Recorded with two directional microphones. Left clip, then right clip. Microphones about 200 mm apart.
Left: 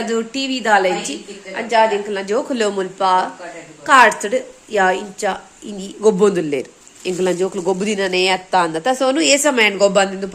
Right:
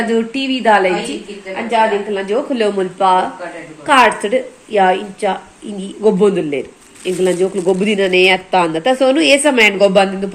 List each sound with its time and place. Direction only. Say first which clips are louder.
0.1 s a woman's voice: right 4 dB; 5° left (ahead or behind)
1.5 s a woman's voice: right 1 dB; 15° left (ahead or behind)
2.7 s a woman's voice: right 3 dB; 5° left (ahead or behind)